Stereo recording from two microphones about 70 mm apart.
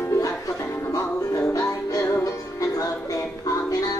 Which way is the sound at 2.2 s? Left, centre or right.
Left.